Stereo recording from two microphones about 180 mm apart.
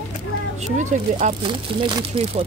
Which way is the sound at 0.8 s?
45° right (ahead or behind).